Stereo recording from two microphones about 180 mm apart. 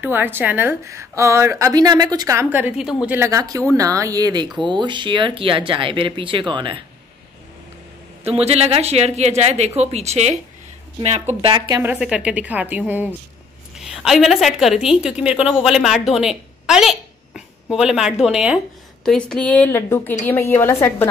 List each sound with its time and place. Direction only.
0.0 s a woman's voice: 10° right (ahead or behind); by 6.8 s 25° right (ahead or behind)
8.3 s speech: 35° right (ahead or behind)
11.7 s a woman's voice: 10° right (ahead or behind); by 21.1 s 15° left (ahead or behind)